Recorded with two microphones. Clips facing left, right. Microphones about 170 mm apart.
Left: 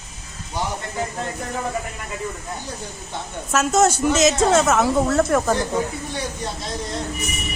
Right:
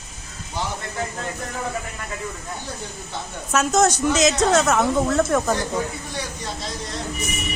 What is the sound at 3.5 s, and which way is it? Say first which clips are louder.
A woman's voice: left 1 dB; 5° left (ahead or behind).